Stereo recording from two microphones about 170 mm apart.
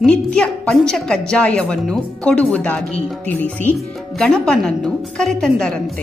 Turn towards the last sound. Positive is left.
turn(degrees=5)  # may be behind; listen again after turning